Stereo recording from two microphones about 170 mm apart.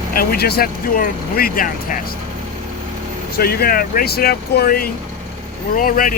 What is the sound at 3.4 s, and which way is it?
Speech, 65° left (ahead or behind).